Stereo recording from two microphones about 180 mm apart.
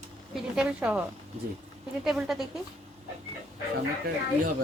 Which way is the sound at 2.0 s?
Centre (ahead or behind).